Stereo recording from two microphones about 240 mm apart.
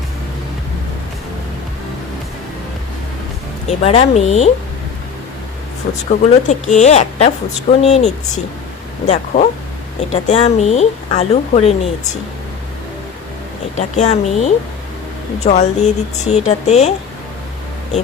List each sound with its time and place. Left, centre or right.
3.7 s a woman's voice: left
6.1 s a woman's voice: left
13.7 s a woman's voice: left